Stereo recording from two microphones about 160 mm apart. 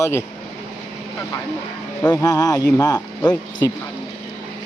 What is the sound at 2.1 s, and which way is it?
Speech, 25° left (ahead or behind).